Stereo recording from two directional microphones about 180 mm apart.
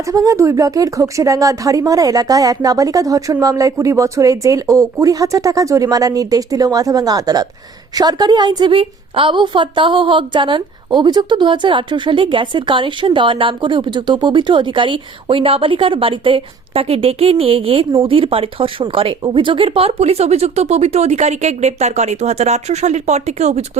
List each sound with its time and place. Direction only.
0.1 s a woman's voice: 20° right (ahead or behind); by 23.6 s 40° right (ahead or behind)